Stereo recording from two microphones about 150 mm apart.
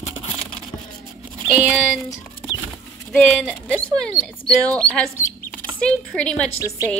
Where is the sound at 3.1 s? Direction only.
5° left (ahead or behind).